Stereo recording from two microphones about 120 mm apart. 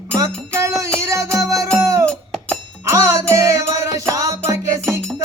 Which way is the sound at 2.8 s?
25° right (ahead or behind).